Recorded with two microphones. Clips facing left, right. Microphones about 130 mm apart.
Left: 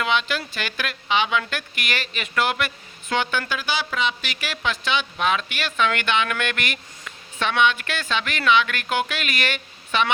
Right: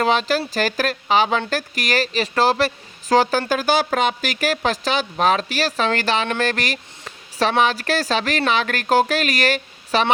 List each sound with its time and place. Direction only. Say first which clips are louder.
0.0 s speech: right 5 dB; 40° right (ahead or behind)